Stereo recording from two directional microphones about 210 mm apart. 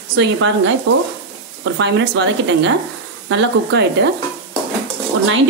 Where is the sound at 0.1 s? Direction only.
60° right (ahead or behind).